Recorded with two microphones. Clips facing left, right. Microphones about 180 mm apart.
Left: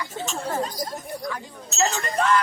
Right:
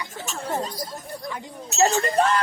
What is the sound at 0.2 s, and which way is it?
Speech, 20° left (ahead or behind).